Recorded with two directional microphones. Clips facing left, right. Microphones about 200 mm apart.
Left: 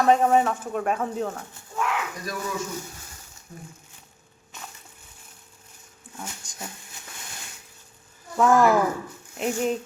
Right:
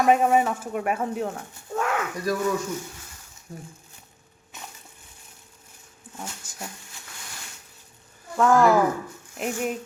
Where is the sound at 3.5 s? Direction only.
35° right (ahead or behind).